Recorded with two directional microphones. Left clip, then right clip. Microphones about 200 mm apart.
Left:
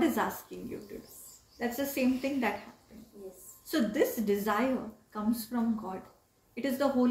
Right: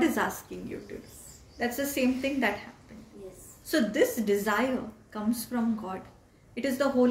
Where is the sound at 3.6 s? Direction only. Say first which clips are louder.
Right 4 dB; 15° right (ahead or behind).